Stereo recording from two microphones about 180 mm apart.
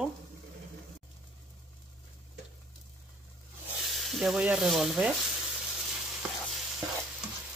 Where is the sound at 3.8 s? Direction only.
Centre (ahead or behind).